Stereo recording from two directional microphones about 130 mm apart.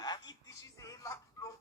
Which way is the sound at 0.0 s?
30° left (ahead or behind).